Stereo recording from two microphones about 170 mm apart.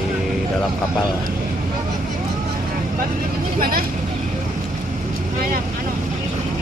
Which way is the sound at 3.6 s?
60° right (ahead or behind).